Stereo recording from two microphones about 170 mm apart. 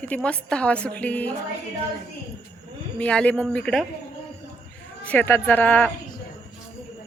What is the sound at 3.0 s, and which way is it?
Speech, 5° left (ahead or behind).